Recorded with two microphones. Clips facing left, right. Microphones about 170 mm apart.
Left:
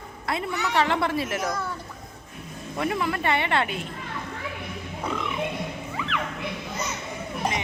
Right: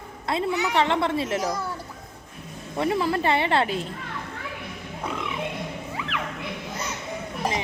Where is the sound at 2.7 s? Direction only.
25° right (ahead or behind).